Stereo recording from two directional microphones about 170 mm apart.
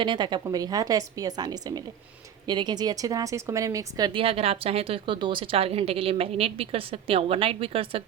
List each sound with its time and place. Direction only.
0.0 s a woman's voice: 25° right (ahead or behind)